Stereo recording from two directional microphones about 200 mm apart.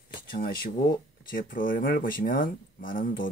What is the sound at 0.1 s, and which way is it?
Speech, 45° left (ahead or behind).